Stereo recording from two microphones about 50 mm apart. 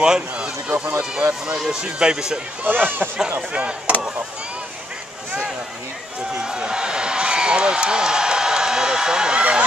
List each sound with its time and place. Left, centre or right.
0.0 s speech: centre
0.7 s speech: right
1.7 s speech: centre
2.6 s speech: right
3.5 s speech: right
6.3 s a sound: centre